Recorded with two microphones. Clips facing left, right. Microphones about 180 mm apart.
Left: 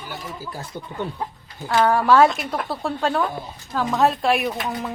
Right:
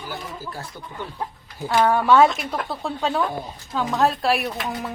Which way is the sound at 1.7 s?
Centre (ahead or behind).